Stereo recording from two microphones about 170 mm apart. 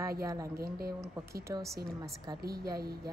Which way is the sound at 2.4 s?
65° right (ahead or behind).